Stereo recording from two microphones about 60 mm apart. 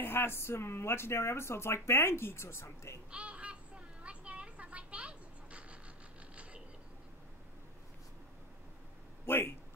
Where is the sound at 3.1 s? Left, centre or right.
Right.